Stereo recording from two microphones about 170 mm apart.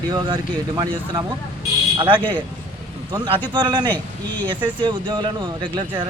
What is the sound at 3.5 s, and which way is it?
Speech, 25° right (ahead or behind).